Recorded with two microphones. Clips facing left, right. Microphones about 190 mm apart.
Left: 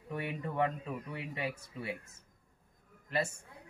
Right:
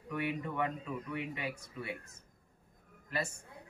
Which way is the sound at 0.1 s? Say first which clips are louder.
Right 1 dB; 30° left (ahead or behind).